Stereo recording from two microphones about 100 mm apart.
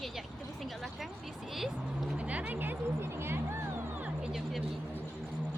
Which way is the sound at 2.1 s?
15° right (ahead or behind).